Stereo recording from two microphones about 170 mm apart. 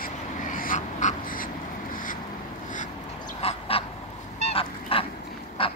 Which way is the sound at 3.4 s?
35° left (ahead or behind).